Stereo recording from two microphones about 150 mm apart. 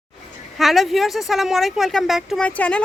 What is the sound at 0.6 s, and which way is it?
Speech, centre (ahead or behind).